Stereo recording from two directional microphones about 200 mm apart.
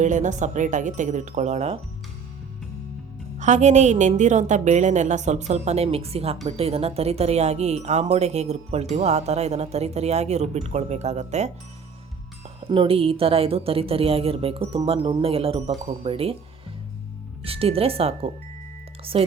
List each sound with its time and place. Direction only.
0.0 s a woman's voice: 40° right (ahead or behind)
3.3 s a woman's voice: 35° right (ahead or behind)
12.5 s a woman's voice: 25° right (ahead or behind)
17.4 s a woman's voice: 30° right (ahead or behind)